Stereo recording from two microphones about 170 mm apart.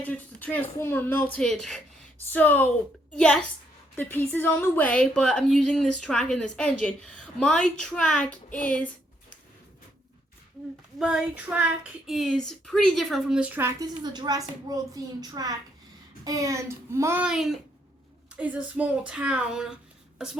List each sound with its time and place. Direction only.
0.0 s a woman's voice: 10° left (ahead or behind)
11.0 s a woman's voice: 5° right (ahead or behind)